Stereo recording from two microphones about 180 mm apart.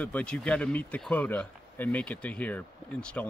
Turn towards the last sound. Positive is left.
turn(degrees=10)  # may be behind; listen again after turning